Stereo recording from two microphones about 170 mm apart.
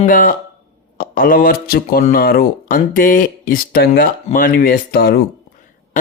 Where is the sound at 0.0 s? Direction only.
55° left (ahead or behind).